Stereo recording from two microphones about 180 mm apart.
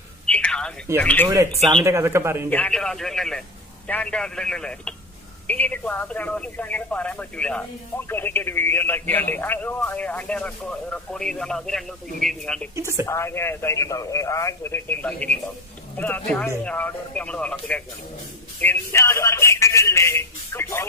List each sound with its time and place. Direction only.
0.3 s telephone: 5° left (ahead or behind)
0.9 s speech: 10° left (ahead or behind)
1.3 s speech: 20° right (ahead or behind)
2.5 s a man's voice: 5° left (ahead or behind)
12.7 s speech: 15° right (ahead or behind)
13.0 s speech: 15° left (ahead or behind)